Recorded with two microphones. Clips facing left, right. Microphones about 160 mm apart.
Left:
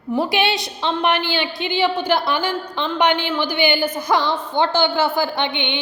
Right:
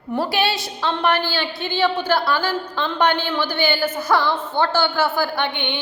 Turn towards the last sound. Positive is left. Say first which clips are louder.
# left 1 dB
turn(degrees=20)  # may be behind; listen again after turning